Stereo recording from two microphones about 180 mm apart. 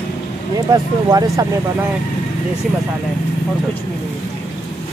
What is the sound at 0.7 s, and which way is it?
Speech, 20° right (ahead or behind).